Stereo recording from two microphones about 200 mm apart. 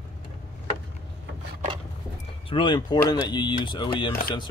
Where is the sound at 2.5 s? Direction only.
25° left (ahead or behind).